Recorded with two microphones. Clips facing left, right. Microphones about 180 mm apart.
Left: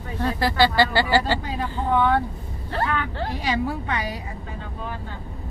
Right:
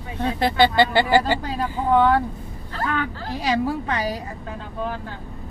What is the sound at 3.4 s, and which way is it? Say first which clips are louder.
Speech: right 5 dB; 40° right (ahead or behind).